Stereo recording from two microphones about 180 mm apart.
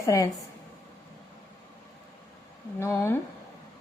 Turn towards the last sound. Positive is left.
turn(degrees=15)  # may be behind; listen again after turning